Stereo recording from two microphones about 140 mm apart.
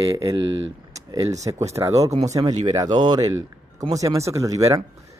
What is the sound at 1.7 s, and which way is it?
Speech, 25° right (ahead or behind).